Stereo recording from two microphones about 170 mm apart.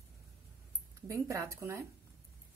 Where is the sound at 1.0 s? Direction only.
20° right (ahead or behind).